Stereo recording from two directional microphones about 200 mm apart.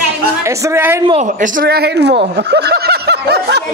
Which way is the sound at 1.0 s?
35° right (ahead or behind).